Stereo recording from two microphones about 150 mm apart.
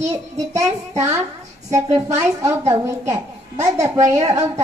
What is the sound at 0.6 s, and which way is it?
A woman's voice, 20° right (ahead or behind).